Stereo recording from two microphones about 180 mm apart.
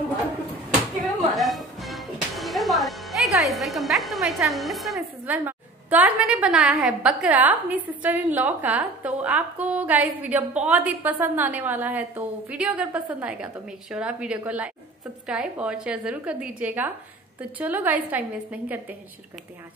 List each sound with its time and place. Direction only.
1.3 s whip: centre (ahead or behind)
3.5 s a woman's voice: centre (ahead or behind)